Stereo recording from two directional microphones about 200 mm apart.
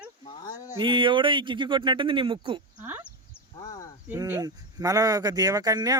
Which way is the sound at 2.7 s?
10° right (ahead or behind).